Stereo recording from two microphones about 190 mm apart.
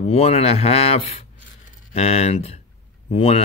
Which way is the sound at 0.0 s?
30° left (ahead or behind).